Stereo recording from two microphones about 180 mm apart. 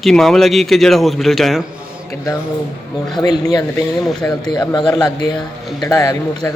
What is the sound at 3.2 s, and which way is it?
Speech, 20° left (ahead or behind).